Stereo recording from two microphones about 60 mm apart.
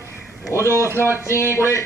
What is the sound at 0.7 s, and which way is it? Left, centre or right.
Speech, right.